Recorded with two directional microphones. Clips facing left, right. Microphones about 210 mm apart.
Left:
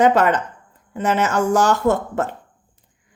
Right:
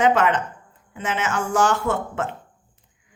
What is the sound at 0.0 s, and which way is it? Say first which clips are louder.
Speech: left 3 dB; 40° left (ahead or behind).